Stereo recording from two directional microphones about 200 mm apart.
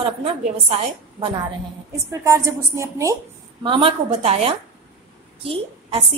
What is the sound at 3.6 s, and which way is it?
A woman's voice, 25° right (ahead or behind).